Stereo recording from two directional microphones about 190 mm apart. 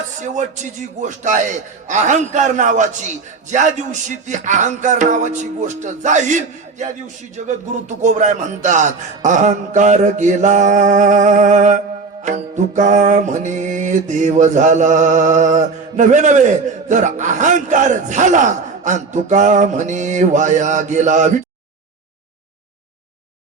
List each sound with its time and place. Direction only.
0.2 s music: 40° right (ahead or behind)